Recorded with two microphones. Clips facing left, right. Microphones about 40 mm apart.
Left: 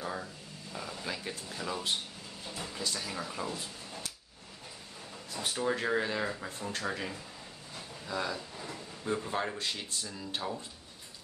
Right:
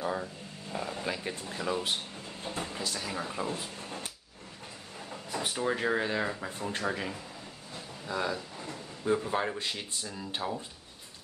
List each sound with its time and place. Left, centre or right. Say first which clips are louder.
0.0 s a sound: right 5 dB; centre
0.7 s a sound: right 4 dB; right
1.3 s speech: right 3 dB; right
1.6 s speech: right 3 dB; centre
2.4 s speech: right 5 dB; right
2.8 s speech: left 3 dB; centre
3.1 s speech: right 3 dB; centre
5.4 s speech: right 1 dB; centre
7.7 s a sound: right 2 dB; centre
9.0 s speech: right 4 dB; centre